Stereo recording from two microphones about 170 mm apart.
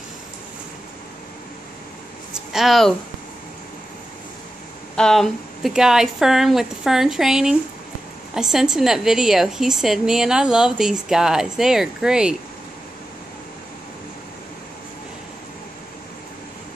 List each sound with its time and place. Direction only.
2.5 s a woman's voice: centre (ahead or behind)
4.9 s a woman's voice: 5° left (ahead or behind)